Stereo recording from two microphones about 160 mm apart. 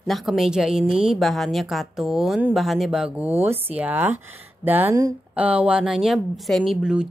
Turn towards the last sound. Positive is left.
turn(degrees=-5)  # may be behind; listen again after turning